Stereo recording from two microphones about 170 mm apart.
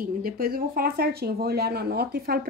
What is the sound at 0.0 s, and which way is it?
A woman's voice, 60° right (ahead or behind).